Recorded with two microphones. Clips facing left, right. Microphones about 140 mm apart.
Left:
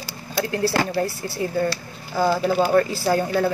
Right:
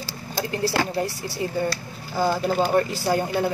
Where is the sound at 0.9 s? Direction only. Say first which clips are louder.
Left 2 dB; 15° right (ahead or behind).